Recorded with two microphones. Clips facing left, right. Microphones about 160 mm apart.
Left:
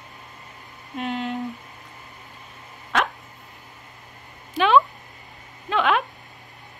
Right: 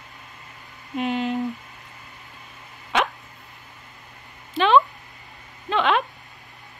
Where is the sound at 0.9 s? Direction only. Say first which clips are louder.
Right 3 dB; centre (ahead or behind).